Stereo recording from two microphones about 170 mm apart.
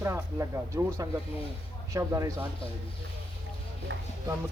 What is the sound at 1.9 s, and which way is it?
Speech, 20° right (ahead or behind).